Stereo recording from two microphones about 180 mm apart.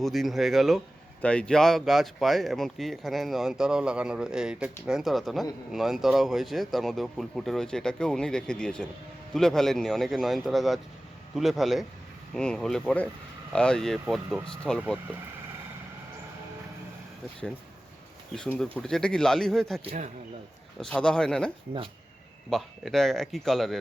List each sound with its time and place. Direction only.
0.0 s speech: centre (ahead or behind)
18.3 s speech: 5° left (ahead or behind)
19.8 s speech: 30° right (ahead or behind)
20.8 s speech: 5° left (ahead or behind)